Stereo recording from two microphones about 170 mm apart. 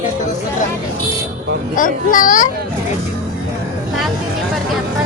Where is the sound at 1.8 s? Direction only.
50° left (ahead or behind).